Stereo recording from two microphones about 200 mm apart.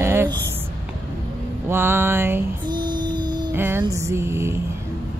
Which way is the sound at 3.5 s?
10° right (ahead or behind).